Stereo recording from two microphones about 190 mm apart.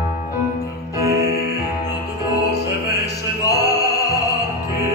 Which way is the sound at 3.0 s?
20° left (ahead or behind).